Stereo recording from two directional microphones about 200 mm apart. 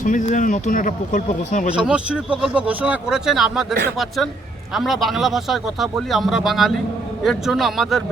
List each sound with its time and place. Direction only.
0.0 s speech: 40° left (ahead or behind)
1.7 s speech: 5° right (ahead or behind)